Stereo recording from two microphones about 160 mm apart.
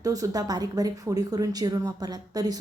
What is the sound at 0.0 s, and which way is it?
A woman's voice, 20° right (ahead or behind).